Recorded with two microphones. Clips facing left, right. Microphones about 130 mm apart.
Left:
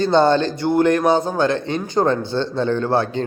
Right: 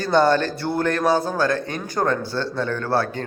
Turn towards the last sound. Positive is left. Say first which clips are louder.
# left 4 dB
turn(degrees=20)  # may be behind; listen again after turning